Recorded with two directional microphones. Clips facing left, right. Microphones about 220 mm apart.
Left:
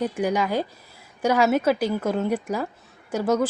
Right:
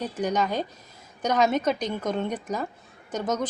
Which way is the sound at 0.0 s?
10° left (ahead or behind).